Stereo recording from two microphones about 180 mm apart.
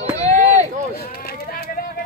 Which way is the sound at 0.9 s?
55° left (ahead or behind).